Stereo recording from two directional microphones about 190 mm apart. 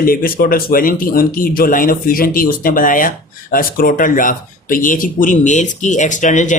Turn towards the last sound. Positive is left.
turn(degrees=40)  # may be behind; listen again after turning